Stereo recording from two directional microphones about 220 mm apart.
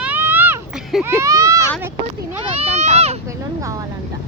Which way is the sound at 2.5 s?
30° right (ahead or behind).